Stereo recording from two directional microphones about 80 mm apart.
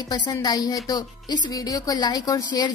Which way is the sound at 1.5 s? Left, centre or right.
Left.